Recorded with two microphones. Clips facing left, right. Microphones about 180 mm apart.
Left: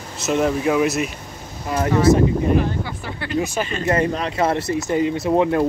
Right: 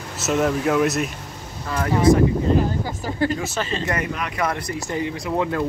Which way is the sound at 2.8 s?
40° right (ahead or behind).